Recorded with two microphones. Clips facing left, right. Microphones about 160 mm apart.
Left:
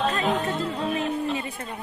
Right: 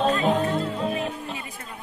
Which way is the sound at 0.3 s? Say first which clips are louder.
Right 2 dB; 35° right (ahead or behind).